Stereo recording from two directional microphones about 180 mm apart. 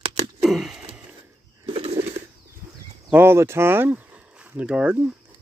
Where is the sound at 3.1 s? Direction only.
15° right (ahead or behind).